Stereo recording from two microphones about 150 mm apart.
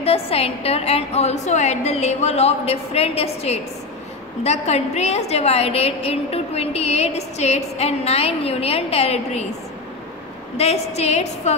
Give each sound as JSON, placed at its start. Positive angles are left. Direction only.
{"t": 0.0, "sound": "a woman's voice", "side_deg": 40}
{"t": 10.6, "sound": "a woman's voice", "side_deg": 45}